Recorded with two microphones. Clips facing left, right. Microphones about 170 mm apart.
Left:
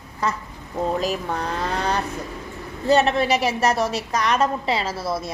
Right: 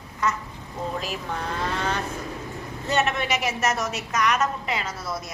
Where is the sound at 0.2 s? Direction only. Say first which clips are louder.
Left 1 dB; 35° left (ahead or behind).